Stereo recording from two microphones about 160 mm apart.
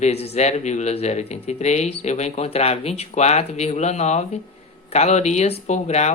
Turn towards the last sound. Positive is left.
turn(degrees=45)  # may be behind; listen again after turning